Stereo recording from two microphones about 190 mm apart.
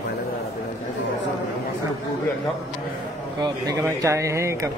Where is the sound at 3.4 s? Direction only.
20° right (ahead or behind).